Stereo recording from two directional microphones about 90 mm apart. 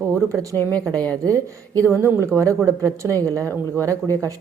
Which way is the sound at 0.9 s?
15° left (ahead or behind).